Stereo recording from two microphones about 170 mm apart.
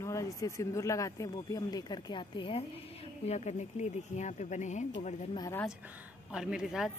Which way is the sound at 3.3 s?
40° left (ahead or behind).